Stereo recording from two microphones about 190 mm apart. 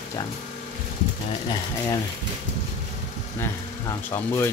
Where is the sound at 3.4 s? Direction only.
15° left (ahead or behind).